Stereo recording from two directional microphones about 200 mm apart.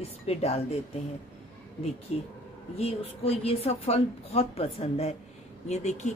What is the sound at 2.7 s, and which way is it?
Speech, 30° left (ahead or behind).